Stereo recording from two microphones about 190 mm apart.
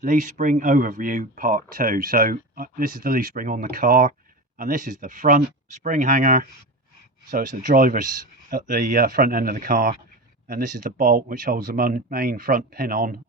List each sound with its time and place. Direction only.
0.0 s speech: 40° right (ahead or behind)